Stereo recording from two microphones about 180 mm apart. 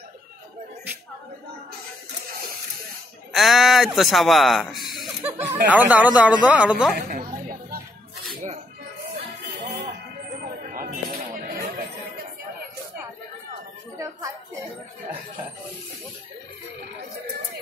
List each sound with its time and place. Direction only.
3.3 s speech: centre (ahead or behind)
7.0 s chatter: 55° right (ahead or behind)
10.4 s music: 50° right (ahead or behind)